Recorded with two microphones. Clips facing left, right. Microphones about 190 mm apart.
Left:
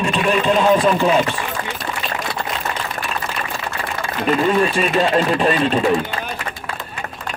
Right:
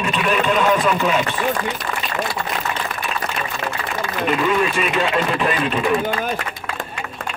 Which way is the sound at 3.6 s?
45° right (ahead or behind).